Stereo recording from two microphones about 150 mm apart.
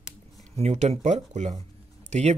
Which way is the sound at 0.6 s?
45° right (ahead or behind).